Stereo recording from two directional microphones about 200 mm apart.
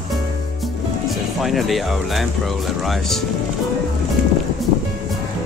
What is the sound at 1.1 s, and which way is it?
Speech, centre (ahead or behind).